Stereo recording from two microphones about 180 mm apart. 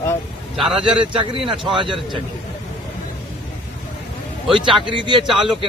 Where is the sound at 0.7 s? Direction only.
30° right (ahead or behind).